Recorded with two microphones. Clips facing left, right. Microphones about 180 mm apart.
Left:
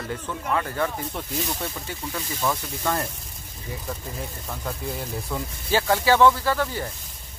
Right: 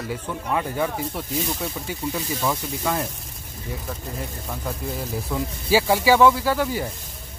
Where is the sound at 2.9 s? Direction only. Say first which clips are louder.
Even; 5° right (ahead or behind).